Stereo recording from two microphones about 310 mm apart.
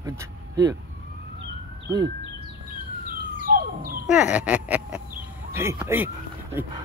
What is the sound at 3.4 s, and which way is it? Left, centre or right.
Bird, right.